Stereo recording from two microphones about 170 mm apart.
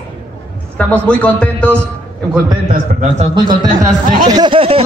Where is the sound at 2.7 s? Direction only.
45° right (ahead or behind).